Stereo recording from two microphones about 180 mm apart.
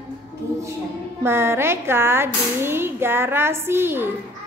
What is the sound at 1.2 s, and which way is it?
Speech, 15° right (ahead or behind).